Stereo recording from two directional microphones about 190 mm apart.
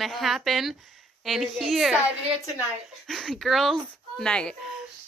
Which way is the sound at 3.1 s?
Centre (ahead or behind).